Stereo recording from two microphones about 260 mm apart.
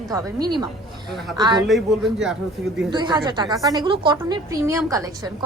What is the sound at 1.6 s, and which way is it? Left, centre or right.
Speech, centre.